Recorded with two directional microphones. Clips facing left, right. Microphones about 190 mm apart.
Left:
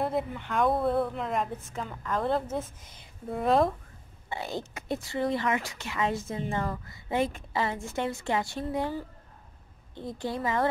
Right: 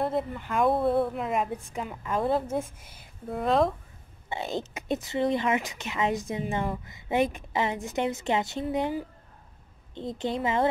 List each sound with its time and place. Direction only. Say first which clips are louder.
0.0 s a woman's voice: right 1 dB; centre (ahead or behind)
4.3 s speech: right 3 dB; 20° right (ahead or behind)